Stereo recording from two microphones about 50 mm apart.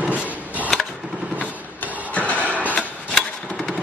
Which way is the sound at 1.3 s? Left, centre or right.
Right.